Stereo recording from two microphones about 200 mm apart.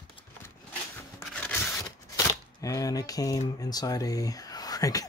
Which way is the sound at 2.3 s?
15° left (ahead or behind).